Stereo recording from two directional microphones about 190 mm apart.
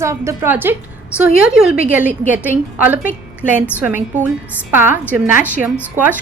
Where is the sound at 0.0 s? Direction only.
15° right (ahead or behind).